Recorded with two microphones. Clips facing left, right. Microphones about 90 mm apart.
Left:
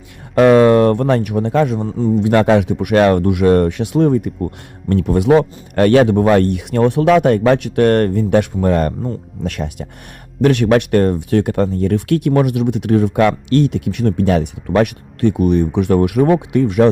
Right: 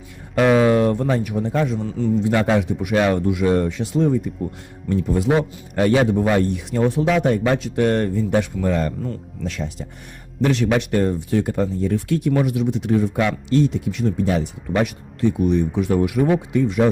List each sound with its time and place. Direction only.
0.3 s a man's voice: 65° left (ahead or behind)